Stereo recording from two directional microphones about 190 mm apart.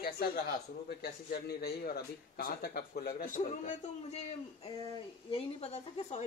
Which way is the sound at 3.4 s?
35° left (ahead or behind).